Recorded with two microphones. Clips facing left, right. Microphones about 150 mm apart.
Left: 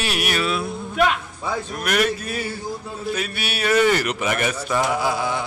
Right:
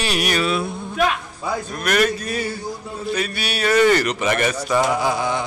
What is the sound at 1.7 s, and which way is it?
Speech, 5° left (ahead or behind).